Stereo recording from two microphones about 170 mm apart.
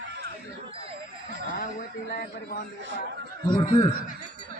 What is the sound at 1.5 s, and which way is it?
A man's voice, 60° left (ahead or behind).